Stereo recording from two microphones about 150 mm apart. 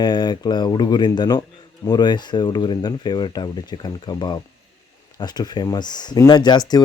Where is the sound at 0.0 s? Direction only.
30° left (ahead or behind).